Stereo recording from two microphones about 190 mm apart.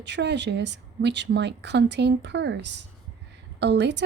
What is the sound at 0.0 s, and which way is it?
A woman's voice, 65° right (ahead or behind).